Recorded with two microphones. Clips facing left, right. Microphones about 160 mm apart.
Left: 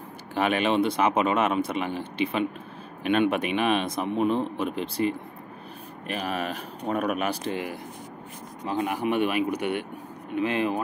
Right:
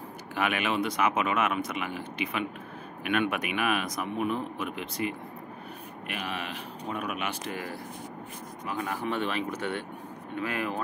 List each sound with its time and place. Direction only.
0.3 s speech: 30° left (ahead or behind)
8.8 s speech: 15° left (ahead or behind)